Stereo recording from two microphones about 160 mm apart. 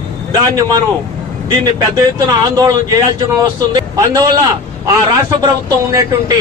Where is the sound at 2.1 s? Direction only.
20° right (ahead or behind).